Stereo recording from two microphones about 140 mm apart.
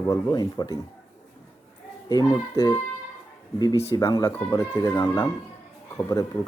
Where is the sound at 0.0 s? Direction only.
20° left (ahead or behind).